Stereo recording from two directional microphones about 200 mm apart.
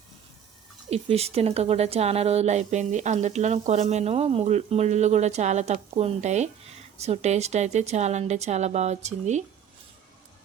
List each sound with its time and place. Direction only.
0.9 s speech: 30° right (ahead or behind)